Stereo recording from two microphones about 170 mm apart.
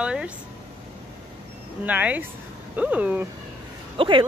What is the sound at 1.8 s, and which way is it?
Speech, 10° right (ahead or behind).